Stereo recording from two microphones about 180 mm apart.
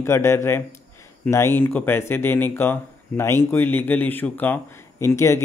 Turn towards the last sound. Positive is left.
turn(degrees=15)  # may be behind; listen again after turning